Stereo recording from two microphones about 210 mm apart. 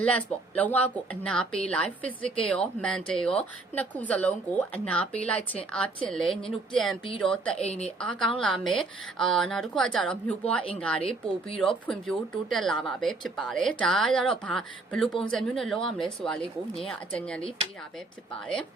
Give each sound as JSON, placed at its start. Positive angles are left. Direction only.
{"t": 0.0, "sound": "speech", "side_deg": 5}